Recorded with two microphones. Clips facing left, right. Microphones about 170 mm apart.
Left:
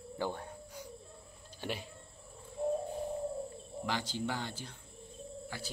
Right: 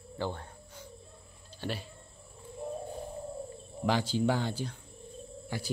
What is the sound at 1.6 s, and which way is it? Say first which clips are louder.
Speech: right 2 dB; 15° left (ahead or behind).